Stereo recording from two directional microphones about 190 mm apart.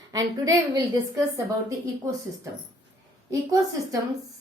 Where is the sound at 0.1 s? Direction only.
20° right (ahead or behind).